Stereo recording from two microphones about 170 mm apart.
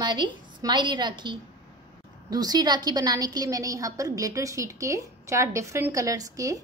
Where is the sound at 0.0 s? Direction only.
25° right (ahead or behind).